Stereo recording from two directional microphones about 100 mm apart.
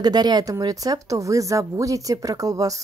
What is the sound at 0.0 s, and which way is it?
A woman's voice, 45° right (ahead or behind).